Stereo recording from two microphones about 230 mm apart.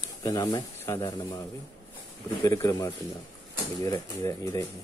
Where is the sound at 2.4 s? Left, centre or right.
Centre.